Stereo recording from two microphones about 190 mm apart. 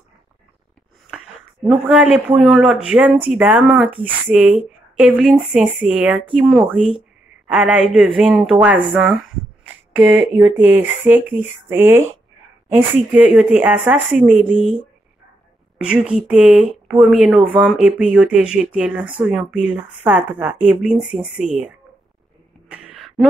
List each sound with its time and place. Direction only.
1.9 s a woman's voice: 5° right (ahead or behind)
14.6 s speech: 35° right (ahead or behind)
15.8 s a woman's voice: 5° right (ahead or behind)
22.7 s throat clearing: 5° right (ahead or behind)